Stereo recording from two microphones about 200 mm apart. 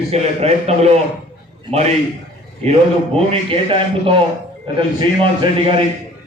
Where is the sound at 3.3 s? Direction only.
25° right (ahead or behind).